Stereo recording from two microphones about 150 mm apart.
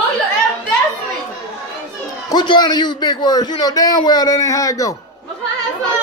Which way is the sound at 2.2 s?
30° left (ahead or behind).